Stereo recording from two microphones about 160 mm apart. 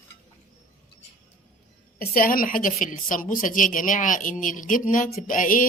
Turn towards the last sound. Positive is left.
turn(degrees=55)  # may be behind; listen again after turning